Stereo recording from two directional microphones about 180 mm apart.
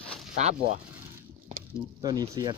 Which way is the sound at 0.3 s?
40° right (ahead or behind).